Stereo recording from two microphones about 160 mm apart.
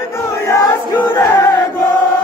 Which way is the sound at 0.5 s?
15° left (ahead or behind).